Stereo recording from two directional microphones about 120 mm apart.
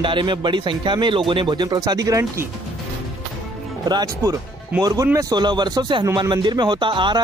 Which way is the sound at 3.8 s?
35° right (ahead or behind).